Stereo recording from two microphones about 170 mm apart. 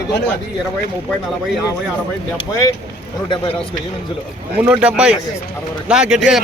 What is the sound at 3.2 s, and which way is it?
Speech, 30° left (ahead or behind).